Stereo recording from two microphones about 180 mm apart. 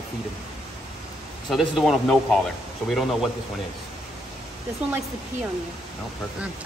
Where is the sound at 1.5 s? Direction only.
Centre (ahead or behind).